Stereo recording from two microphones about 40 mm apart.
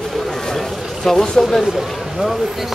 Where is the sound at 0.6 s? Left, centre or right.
Centre.